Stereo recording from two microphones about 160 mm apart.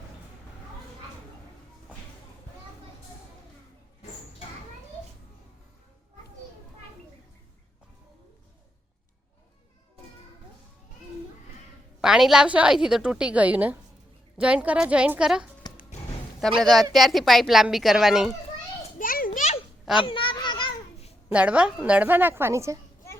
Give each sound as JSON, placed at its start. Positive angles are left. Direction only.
{"t": 11.9, "sound": "a woman's voice", "side_deg": -5}
{"t": 15.6, "sound": "music", "side_deg": 25}
{"t": 16.6, "sound": "a woman's voice", "side_deg": 0}
{"t": 18.9, "sound": "children playing", "side_deg": 60}
{"t": 20.0, "sound": "a sound", "side_deg": 30}
{"t": 21.3, "sound": "a woman's voice", "side_deg": -10}